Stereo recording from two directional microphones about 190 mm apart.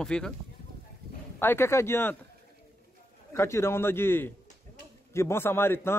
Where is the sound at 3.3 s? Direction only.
15° left (ahead or behind).